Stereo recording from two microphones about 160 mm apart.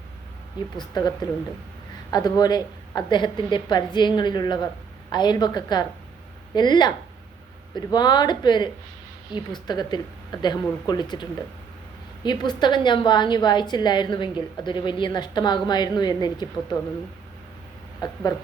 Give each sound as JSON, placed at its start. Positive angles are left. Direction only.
{"t": 0.8, "sound": "a woman's voice", "side_deg": 25}
{"t": 18.0, "sound": "a woman's voice", "side_deg": 25}